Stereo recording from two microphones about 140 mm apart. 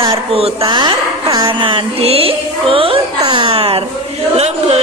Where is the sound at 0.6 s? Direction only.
35° right (ahead or behind).